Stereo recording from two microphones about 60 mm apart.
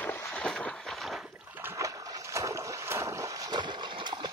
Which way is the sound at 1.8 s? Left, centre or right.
Right.